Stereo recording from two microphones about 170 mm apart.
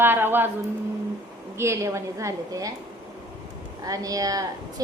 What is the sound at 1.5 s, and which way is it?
A woman's voice, 15° right (ahead or behind).